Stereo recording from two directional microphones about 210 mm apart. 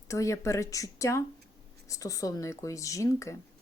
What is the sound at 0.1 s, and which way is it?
A woman's voice, 15° left (ahead or behind).